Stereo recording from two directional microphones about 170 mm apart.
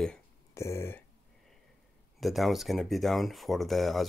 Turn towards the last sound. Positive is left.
turn(degrees=0)  # may be behind; listen again after turning